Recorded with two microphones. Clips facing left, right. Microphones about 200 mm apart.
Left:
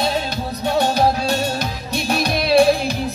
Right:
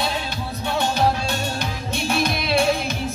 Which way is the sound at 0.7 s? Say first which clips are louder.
Left 4 dB; 40° left (ahead or behind).